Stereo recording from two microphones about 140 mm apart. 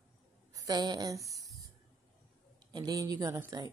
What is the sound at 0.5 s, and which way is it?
Speech, 25° right (ahead or behind).